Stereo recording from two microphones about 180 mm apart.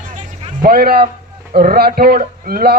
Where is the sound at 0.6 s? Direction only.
60° right (ahead or behind).